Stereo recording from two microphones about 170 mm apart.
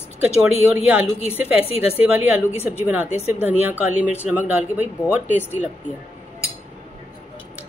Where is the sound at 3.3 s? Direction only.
10° right (ahead or behind).